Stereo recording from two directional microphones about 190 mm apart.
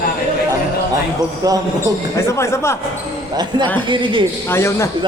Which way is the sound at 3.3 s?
20° right (ahead or behind).